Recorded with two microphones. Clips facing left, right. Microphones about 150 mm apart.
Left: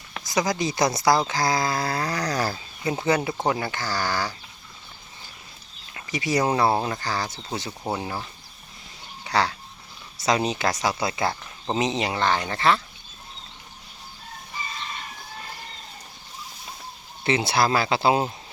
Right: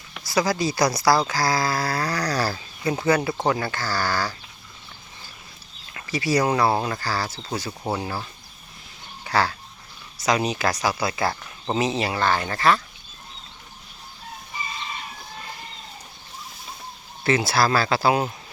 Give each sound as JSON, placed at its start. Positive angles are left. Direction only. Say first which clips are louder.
{"t": 0.2, "sound": "speech", "louder": "right 2 dB", "side_deg": 20}
{"t": 5.9, "sound": "speech", "louder": "right 2 dB", "side_deg": 20}
{"t": 9.2, "sound": "speech", "louder": "right 1 dB", "side_deg": 25}
{"t": 17.2, "sound": "speech", "louder": "right 1 dB", "side_deg": 20}